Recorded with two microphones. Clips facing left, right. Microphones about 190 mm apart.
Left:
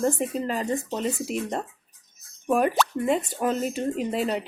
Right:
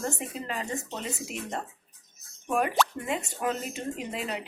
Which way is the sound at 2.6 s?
40° left (ahead or behind).